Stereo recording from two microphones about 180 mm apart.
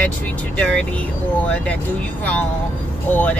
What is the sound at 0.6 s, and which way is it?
Speech, 5° left (ahead or behind).